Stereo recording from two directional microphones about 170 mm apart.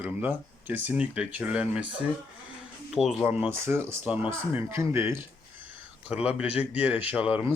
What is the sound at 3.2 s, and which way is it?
Speech, 15° right (ahead or behind).